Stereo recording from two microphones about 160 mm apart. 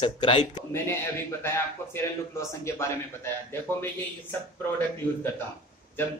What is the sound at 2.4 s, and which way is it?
Speech, 20° left (ahead or behind).